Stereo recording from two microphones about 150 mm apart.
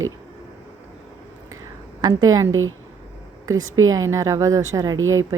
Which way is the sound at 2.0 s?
25° right (ahead or behind).